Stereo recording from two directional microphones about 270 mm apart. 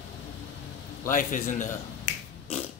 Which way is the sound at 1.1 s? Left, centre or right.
Left.